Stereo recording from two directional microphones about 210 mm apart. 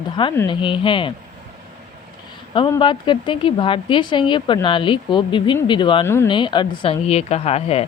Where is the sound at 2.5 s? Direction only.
20° left (ahead or behind).